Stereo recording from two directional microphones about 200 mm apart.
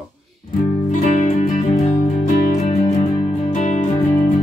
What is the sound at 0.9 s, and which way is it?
Music, 35° left (ahead or behind).